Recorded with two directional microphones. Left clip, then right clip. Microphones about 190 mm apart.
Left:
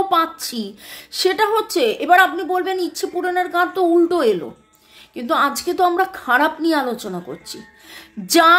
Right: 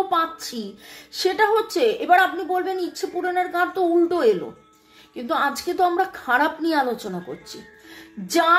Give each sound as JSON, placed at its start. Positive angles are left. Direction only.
{"t": 0.1, "sound": "a woman's voice", "side_deg": 30}
{"t": 8.3, "sound": "music", "side_deg": 40}